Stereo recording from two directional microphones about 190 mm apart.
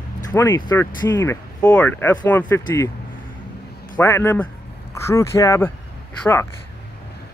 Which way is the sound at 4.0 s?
15° left (ahead or behind).